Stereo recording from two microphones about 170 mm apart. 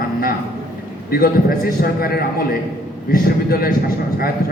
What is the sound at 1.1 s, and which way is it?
A man's voice, 60° left (ahead or behind).